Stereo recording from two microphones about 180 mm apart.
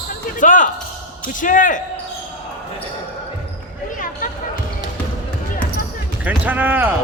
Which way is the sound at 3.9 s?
50° left (ahead or behind).